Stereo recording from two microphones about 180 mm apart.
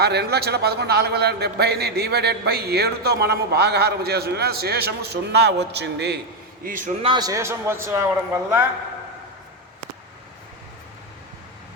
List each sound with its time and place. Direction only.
0.0 s a man's voice: 65° right (ahead or behind)
6.7 s a man's voice: 45° right (ahead or behind)
7.0 s a man's voice: 25° right (ahead or behind)